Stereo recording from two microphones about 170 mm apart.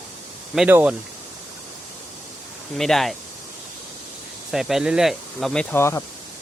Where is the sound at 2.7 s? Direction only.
Centre (ahead or behind).